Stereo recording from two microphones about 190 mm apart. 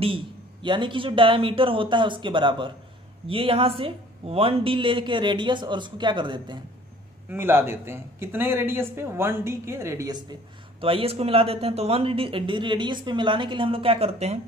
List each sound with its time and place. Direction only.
0.0 s a man's voice: 25° right (ahead or behind)
7.2 s a man's voice: 10° right (ahead or behind)
10.8 s a man's voice: 30° right (ahead or behind)